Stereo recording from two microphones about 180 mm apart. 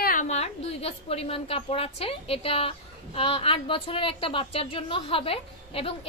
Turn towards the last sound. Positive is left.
turn(degrees=30)  # may be behind; listen again after turning